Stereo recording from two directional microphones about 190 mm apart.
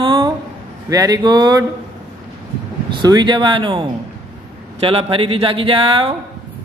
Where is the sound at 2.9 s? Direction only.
20° right (ahead or behind).